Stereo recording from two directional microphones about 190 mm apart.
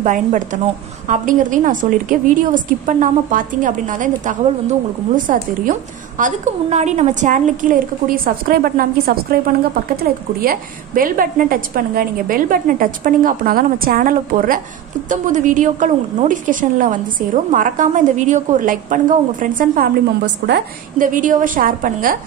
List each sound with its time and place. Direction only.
0.0 s a woman's voice: 40° right (ahead or behind)
20.4 s a woman's voice: 60° right (ahead or behind)
21.1 s a woman's voice: 45° right (ahead or behind)